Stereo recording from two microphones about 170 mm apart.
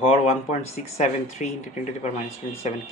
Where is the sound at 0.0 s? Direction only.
35° left (ahead or behind).